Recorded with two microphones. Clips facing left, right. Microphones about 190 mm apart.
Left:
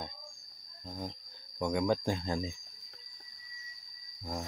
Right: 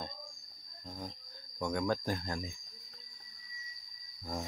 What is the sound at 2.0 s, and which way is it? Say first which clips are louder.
Speech: left 4 dB; 25° left (ahead or behind).